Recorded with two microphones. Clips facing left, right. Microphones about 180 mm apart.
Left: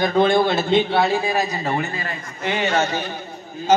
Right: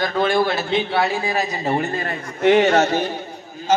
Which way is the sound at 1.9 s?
55° right (ahead or behind).